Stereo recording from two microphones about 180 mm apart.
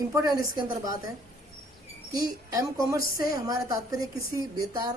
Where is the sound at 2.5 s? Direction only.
15° right (ahead or behind).